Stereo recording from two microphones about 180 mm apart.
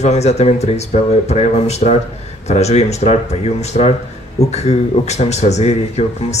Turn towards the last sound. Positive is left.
turn(degrees=35)  # may be behind; listen again after turning